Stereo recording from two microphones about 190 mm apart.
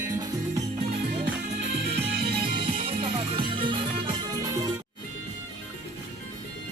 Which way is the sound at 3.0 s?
30° right (ahead or behind).